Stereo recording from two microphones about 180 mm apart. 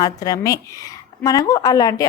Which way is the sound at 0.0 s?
20° left (ahead or behind).